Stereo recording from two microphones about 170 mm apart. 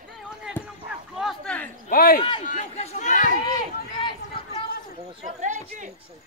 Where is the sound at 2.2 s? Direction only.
30° left (ahead or behind).